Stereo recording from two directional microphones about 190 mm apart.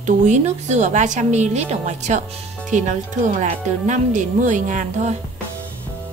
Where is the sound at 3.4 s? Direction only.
40° right (ahead or behind).